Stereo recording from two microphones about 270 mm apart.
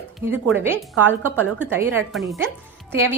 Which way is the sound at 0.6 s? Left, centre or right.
Centre.